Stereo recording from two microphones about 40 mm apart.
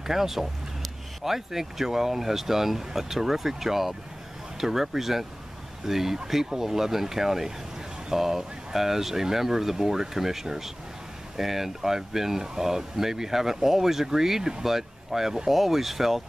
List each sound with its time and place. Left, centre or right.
0.0 s speech: centre